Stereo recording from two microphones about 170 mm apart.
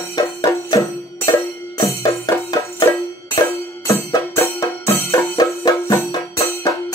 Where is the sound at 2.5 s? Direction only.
15° left (ahead or behind).